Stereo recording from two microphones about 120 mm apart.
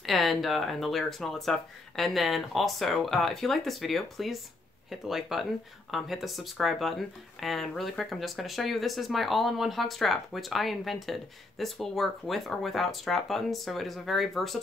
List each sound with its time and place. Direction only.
0.0 s speech: centre (ahead or behind)